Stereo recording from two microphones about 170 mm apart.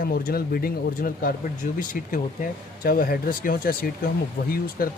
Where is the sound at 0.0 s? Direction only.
60° left (ahead or behind).